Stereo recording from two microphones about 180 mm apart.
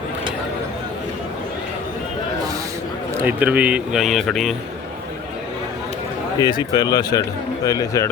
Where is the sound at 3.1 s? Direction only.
10° right (ahead or behind).